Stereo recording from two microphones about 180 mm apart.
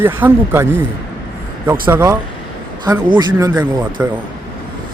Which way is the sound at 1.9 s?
20° right (ahead or behind).